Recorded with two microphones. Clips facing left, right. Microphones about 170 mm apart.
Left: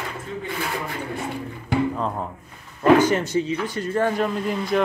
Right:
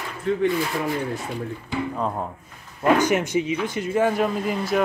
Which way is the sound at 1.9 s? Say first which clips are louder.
Even; 5° right (ahead or behind).